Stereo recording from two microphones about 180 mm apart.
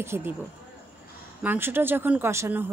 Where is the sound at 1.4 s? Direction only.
10° right (ahead or behind).